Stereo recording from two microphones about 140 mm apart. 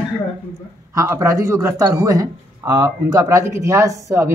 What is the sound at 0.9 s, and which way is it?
Speech, 20° right (ahead or behind).